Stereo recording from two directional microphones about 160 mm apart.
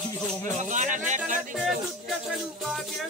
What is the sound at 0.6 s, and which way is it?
Speech, 50° right (ahead or behind).